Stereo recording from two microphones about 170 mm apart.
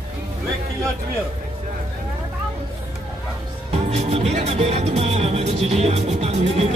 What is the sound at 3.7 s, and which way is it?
Music, 40° right (ahead or behind).